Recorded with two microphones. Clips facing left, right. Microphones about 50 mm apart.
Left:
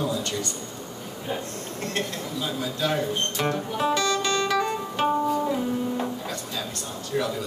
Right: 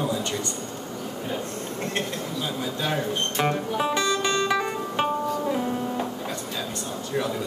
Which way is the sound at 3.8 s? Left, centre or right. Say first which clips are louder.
Left 1 dB; right.